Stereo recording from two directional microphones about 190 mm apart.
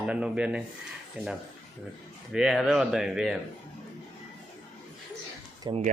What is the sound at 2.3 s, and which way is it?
Speech, 5° right (ahead or behind).